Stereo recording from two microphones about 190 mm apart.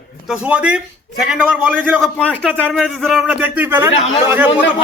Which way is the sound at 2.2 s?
5° left (ahead or behind).